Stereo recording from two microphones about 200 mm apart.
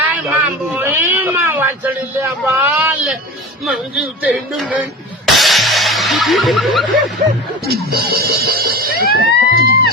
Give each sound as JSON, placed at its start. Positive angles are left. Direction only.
{"t": 0.0, "sound": "a sound", "side_deg": -10}
{"t": 3.6, "sound": "speech", "side_deg": -5}
{"t": 7.2, "sound": "speech", "side_deg": -40}
{"t": 9.6, "sound": "music", "side_deg": 50}